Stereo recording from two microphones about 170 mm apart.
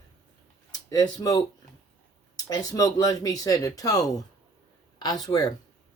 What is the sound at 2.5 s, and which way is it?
Speech, 20° left (ahead or behind).